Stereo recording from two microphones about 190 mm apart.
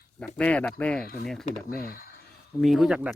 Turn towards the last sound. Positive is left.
turn(degrees=-5)  # may be behind; listen again after turning